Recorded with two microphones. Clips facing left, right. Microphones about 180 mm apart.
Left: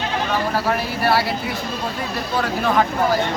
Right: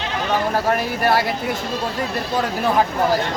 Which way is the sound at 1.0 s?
45° right (ahead or behind).